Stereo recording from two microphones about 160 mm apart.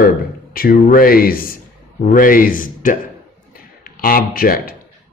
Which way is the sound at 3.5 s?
65° left (ahead or behind).